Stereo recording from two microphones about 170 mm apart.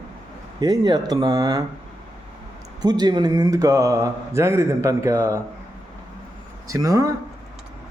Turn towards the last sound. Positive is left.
turn(degrees=-20)  # may be behind; listen again after turning